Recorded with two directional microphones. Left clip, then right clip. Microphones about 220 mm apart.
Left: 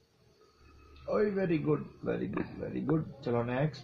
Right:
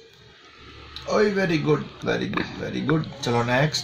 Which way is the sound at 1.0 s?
35° right (ahead or behind).